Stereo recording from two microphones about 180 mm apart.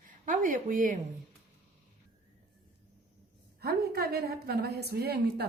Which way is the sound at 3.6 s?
60° right (ahead or behind).